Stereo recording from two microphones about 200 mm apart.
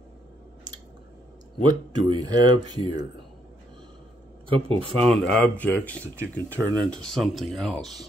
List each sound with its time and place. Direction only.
1.6 s speech: 20° right (ahead or behind)
4.5 s speech: 30° right (ahead or behind)
5.0 s speech: 5° left (ahead or behind)